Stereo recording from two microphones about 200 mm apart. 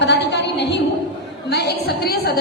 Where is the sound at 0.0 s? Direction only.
60° left (ahead or behind).